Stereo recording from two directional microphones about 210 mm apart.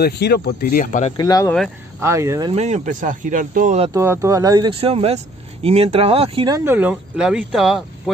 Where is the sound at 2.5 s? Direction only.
30° right (ahead or behind).